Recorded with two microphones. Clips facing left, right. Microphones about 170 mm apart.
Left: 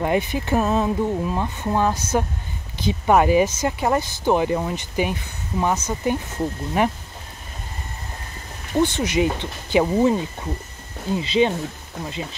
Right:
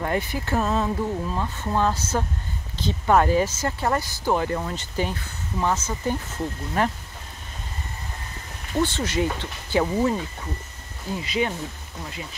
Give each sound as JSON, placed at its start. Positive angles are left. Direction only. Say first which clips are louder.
{"t": 0.0, "sound": "speech", "louder": "left 4 dB", "side_deg": 20}
{"t": 8.7, "sound": "speech", "louder": "left 4 dB", "side_deg": 15}